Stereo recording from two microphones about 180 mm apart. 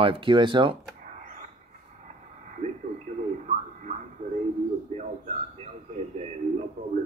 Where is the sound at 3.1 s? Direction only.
45° right (ahead or behind).